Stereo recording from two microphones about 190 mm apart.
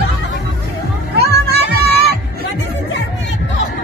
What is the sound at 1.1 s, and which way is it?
Music, 55° right (ahead or behind).